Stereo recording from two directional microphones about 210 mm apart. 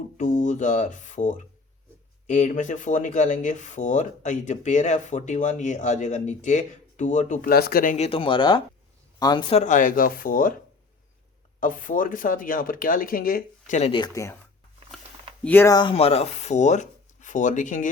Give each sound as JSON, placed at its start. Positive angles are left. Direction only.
{"t": 0.2, "sound": "speech", "side_deg": 35}
{"t": 11.6, "sound": "speech", "side_deg": 40}
{"t": 15.4, "sound": "speech", "side_deg": 10}
{"t": 16.0, "sound": "speech", "side_deg": 30}